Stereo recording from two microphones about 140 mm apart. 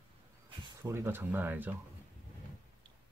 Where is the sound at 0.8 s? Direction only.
15° right (ahead or behind).